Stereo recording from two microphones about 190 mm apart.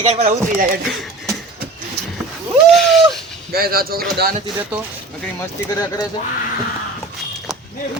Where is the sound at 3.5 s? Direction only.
50° right (ahead or behind).